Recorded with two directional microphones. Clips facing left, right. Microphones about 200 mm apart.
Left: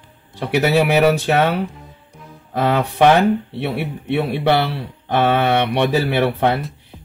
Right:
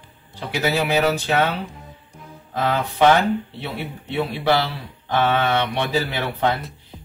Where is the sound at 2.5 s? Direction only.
65° left (ahead or behind).